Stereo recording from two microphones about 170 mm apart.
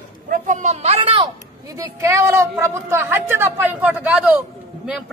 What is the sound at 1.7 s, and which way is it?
A woman's voice, 15° right (ahead or behind).